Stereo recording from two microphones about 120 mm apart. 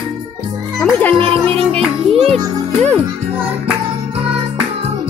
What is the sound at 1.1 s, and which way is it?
Speech, 50° right (ahead or behind).